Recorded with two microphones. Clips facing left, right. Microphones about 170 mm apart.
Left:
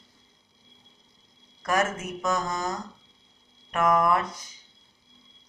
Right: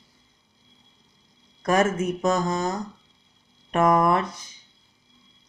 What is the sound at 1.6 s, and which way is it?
Speech, 30° right (ahead or behind).